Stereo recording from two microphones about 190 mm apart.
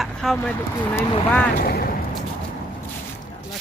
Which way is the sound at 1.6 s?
50° left (ahead or behind).